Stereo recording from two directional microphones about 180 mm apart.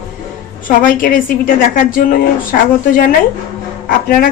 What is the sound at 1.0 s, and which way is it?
A woman's voice, 50° left (ahead or behind).